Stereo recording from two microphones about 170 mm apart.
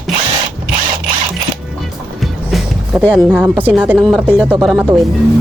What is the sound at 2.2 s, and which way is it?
Music, centre (ahead or behind).